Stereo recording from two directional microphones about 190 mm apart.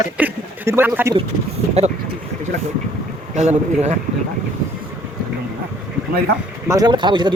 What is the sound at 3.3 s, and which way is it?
Speech, 35° right (ahead or behind).